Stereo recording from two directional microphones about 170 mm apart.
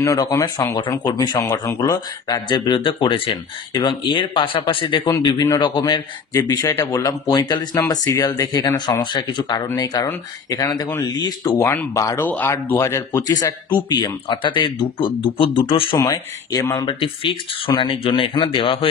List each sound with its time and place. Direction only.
0.0 s speech: 20° left (ahead or behind)
16.0 s speech: 20° left (ahead or behind)